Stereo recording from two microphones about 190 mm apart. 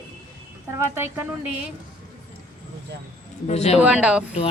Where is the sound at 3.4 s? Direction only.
35° left (ahead or behind).